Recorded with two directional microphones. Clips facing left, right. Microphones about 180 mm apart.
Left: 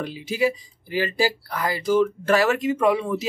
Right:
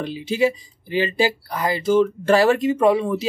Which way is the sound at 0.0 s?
25° right (ahead or behind).